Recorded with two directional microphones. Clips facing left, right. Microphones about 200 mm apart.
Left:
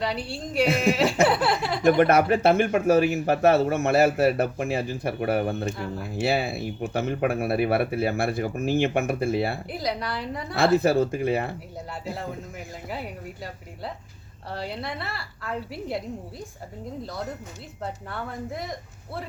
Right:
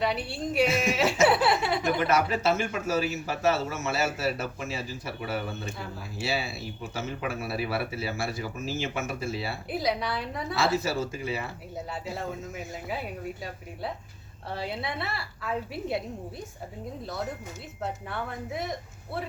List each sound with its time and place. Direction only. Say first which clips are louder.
0.0 s a woman's voice: even; centre (ahead or behind)
1.0 s speech: even; 60° left (ahead or behind)
1.3 s a sound: even; centre (ahead or behind)
1.8 s speech: left 7 dB; 55° left (ahead or behind)
9.6 s a woman's voice: right 1 dB; centre (ahead or behind)
10.8 s speech: left 8 dB; 60° left (ahead or behind)
12.1 s a woman's voice: even; centre (ahead or behind)
14.5 s a woman's voice: left 1 dB; centre (ahead or behind)
17.8 s a woman's voice: even; centre (ahead or behind)